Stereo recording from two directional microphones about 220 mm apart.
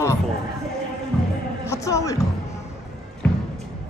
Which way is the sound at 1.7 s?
15° left (ahead or behind).